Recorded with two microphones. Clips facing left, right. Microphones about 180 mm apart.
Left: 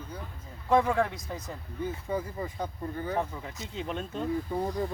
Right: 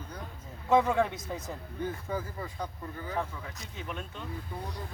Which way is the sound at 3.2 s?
25° left (ahead or behind).